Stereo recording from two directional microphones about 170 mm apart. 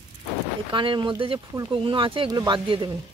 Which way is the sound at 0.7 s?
30° right (ahead or behind).